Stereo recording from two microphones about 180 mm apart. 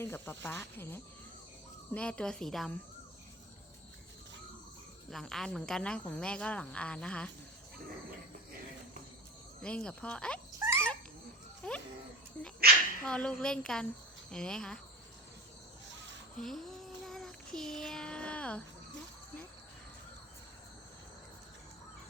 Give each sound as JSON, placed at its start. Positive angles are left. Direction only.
{"t": 0.0, "sound": "speech", "side_deg": 10}
{"t": 5.1, "sound": "speech", "side_deg": 0}
{"t": 9.6, "sound": "speech", "side_deg": 5}
{"t": 10.6, "sound": "dog", "side_deg": -15}
{"t": 11.6, "sound": "speech", "side_deg": 5}
{"t": 13.1, "sound": "speech", "side_deg": 5}
{"t": 16.4, "sound": "child singing", "side_deg": 0}